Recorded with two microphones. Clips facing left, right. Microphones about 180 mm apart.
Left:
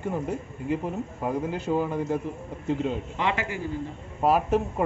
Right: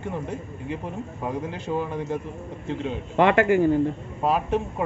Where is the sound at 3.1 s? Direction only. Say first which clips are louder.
Right 10 dB; 55° right (ahead or behind).